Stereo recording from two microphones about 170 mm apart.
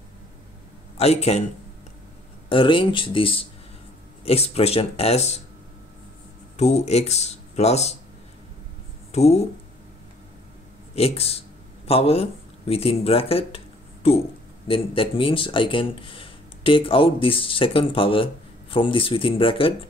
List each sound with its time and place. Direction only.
0.9 s speech: 40° left (ahead or behind)
2.5 s speech: 30° left (ahead or behind)
6.5 s speech: 40° left (ahead or behind)
9.1 s speech: 40° left (ahead or behind)
11.0 s speech: 35° left (ahead or behind)